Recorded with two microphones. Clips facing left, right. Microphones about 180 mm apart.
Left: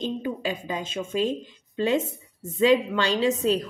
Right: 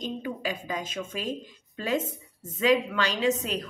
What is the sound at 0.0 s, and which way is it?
A woman's voice, 25° left (ahead or behind).